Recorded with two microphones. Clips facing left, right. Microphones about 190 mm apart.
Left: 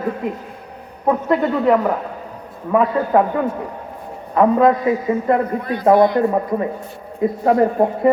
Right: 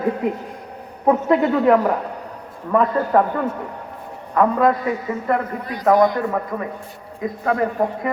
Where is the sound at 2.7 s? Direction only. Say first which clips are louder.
Left 2 dB; 10° left (ahead or behind).